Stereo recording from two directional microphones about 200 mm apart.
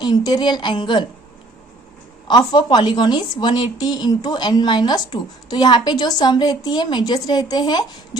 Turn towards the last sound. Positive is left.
turn(degrees=20)  # may be behind; listen again after turning